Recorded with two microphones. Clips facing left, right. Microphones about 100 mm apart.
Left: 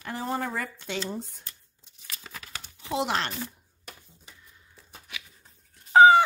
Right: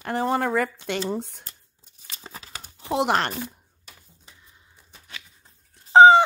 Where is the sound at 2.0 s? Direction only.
30° right (ahead or behind).